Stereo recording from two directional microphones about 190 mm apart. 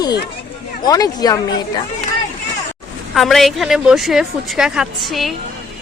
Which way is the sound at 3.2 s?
Centre (ahead or behind).